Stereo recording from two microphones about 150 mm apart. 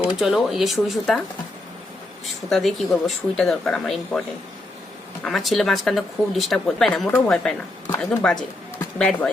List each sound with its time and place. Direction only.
0.2 s speech: centre (ahead or behind)
2.2 s speech: centre (ahead or behind)
5.2 s speech: centre (ahead or behind)
7.9 s speech: 20° left (ahead or behind)
8.2 s speech: 5° left (ahead or behind)